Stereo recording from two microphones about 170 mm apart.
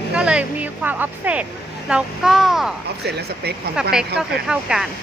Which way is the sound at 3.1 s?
70° right (ahead or behind).